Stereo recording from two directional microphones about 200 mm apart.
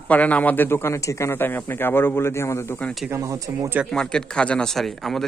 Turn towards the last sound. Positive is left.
turn(degrees=0)  # may be behind; listen again after turning